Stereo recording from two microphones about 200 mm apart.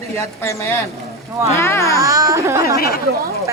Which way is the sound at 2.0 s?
15° right (ahead or behind).